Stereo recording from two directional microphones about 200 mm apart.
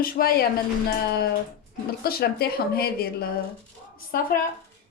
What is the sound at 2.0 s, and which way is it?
A woman's voice, 50° left (ahead or behind).